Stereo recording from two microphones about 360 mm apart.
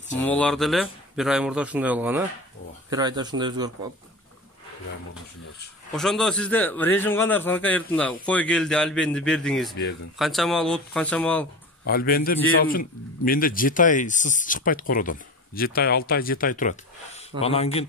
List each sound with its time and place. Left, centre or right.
0.2 s a man's voice: centre
5.9 s a man's voice: centre
11.8 s speech: left